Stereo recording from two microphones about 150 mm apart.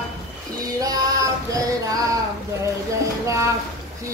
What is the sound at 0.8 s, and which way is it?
Female singing, 25° right (ahead or behind).